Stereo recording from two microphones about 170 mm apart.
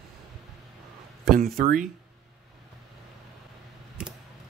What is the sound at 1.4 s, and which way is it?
Speech, 50° right (ahead or behind).